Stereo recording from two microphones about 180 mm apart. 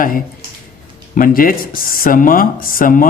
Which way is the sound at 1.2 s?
50° left (ahead or behind).